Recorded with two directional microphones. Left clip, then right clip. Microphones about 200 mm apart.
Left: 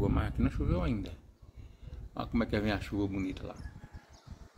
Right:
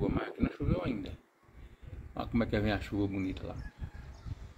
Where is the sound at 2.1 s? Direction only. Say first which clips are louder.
Even; 5° left (ahead or behind).